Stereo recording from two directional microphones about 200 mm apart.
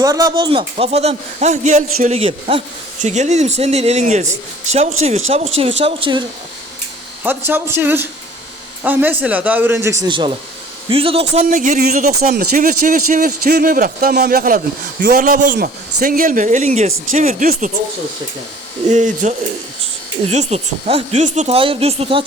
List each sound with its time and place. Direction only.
0.0 s a man's voice: 15° right (ahead or behind)
7.3 s a man's voice: 10° right (ahead or behind); by 17.7 s 40° right (ahead or behind)
18.9 s a man's voice: 35° right (ahead or behind)